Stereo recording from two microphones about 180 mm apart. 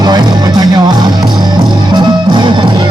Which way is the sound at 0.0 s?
25° right (ahead or behind).